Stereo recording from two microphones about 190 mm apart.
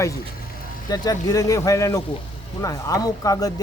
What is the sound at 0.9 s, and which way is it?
Speech, 20° left (ahead or behind).